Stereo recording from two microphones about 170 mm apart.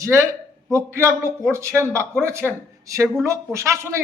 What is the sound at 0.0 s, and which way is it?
A man's voice, 20° right (ahead or behind).